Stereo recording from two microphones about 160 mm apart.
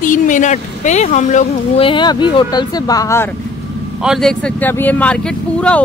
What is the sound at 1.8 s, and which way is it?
Speech, 30° left (ahead or behind).